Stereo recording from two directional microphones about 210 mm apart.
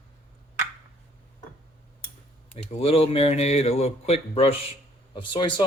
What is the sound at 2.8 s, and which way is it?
A man's voice, 30° left (ahead or behind).